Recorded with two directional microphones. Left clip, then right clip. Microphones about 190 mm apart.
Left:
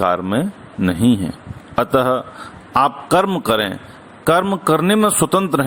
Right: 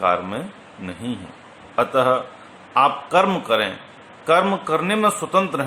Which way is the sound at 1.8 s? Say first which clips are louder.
Left 2 dB; 50° left (ahead or behind).